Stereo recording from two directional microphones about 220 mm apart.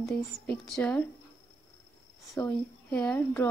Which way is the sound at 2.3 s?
5° left (ahead or behind).